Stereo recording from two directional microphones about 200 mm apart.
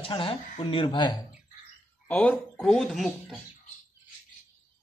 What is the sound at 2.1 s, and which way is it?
Speech, 5° left (ahead or behind).